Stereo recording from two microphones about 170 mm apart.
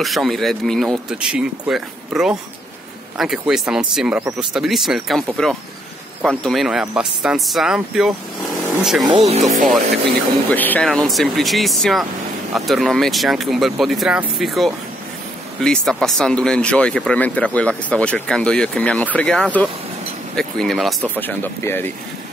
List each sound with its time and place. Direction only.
0.0 s speech: centre (ahead or behind)
9.0 s speech: 35° right (ahead or behind)
10.5 s speech: 10° left (ahead or behind)